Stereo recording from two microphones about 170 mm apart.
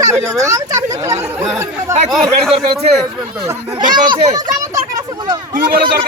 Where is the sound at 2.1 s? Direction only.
Centre (ahead or behind).